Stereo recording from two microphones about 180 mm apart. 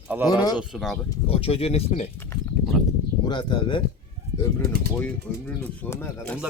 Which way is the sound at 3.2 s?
25° left (ahead or behind).